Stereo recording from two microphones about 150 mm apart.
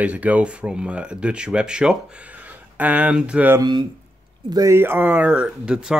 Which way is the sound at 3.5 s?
30° right (ahead or behind).